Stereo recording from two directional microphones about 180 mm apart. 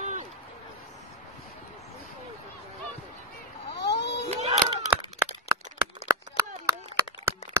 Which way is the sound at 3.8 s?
70° left (ahead or behind).